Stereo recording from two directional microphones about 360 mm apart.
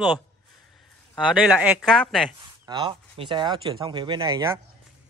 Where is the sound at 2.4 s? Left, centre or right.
Centre.